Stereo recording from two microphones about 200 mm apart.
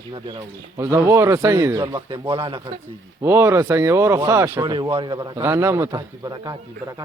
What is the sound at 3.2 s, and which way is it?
Speech, 15° right (ahead or behind).